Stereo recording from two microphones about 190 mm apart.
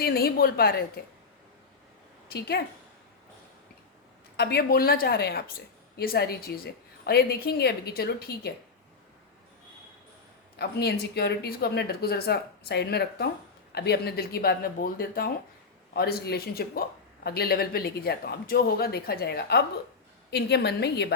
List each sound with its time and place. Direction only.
0.0 s speech: 55° left (ahead or behind)
2.3 s speech: 55° left (ahead or behind)
4.4 s speech: 55° left (ahead or behind)
10.6 s speech: 55° left (ahead or behind)